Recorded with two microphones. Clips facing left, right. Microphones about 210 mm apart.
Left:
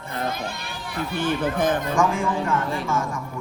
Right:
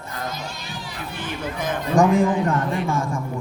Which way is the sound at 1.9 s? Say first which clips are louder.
Right 5 dB; 35° right (ahead or behind).